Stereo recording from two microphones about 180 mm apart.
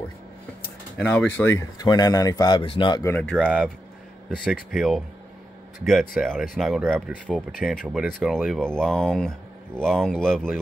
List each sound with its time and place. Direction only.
0.9 s speech: 10° left (ahead or behind); by 3.1 s 25° left (ahead or behind)
3.1 s speech: 10° left (ahead or behind)
3.3 s speech: 5° right (ahead or behind)